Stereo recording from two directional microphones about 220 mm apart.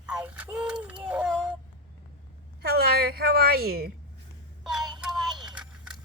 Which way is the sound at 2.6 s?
45° right (ahead or behind).